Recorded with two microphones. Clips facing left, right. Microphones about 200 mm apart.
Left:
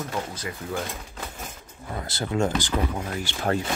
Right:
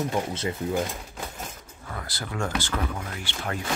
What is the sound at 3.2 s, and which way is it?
Speech, 40° left (ahead or behind).